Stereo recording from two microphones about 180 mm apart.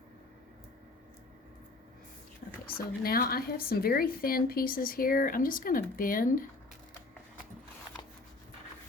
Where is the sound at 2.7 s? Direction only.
55° left (ahead or behind).